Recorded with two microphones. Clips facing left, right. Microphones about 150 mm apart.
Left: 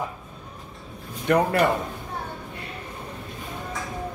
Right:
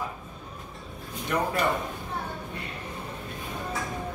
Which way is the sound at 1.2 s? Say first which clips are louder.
Left 7 dB; 65° left (ahead or behind).